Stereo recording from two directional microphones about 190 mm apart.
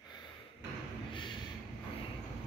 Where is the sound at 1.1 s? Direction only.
25° left (ahead or behind).